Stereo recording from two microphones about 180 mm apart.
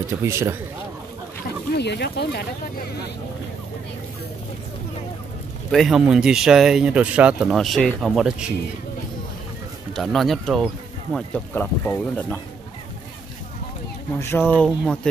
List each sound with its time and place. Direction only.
0.1 s speech: 15° right (ahead or behind)
1.8 s speech: 70° left (ahead or behind)
5.7 s speech: centre (ahead or behind)
9.9 s speech: centre (ahead or behind)
14.1 s speech: 15° left (ahead or behind)